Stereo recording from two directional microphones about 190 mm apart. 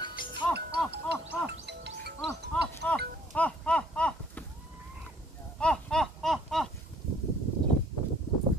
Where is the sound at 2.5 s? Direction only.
5° left (ahead or behind).